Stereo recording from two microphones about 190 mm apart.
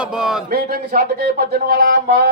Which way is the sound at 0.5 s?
55° right (ahead or behind).